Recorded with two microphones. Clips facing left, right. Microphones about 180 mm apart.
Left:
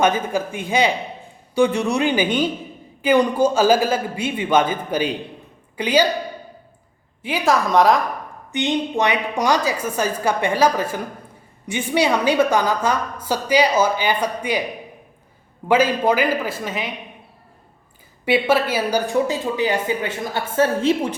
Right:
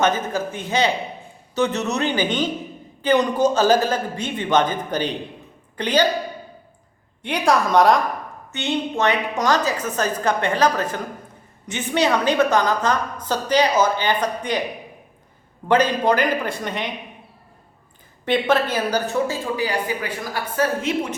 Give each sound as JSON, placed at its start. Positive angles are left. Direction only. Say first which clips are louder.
{"t": 0.0, "sound": "a woman's voice", "louder": "left 2 dB", "side_deg": 10}
{"t": 7.2, "sound": "a woman's voice", "louder": "even", "side_deg": 5}
{"t": 8.5, "sound": "a woman's voice", "louder": "left 3 dB", "side_deg": 15}
{"t": 15.6, "sound": "a woman's voice", "louder": "left 1 dB", "side_deg": 10}
{"t": 18.3, "sound": "speech", "louder": "left 1 dB", "side_deg": 10}